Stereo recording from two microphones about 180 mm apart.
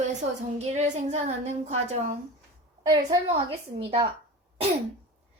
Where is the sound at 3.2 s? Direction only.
30° right (ahead or behind).